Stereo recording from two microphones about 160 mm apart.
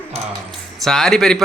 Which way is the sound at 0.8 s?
Centre (ahead or behind).